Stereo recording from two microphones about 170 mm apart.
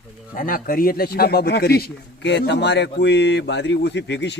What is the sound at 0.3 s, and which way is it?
A man's voice, 55° left (ahead or behind).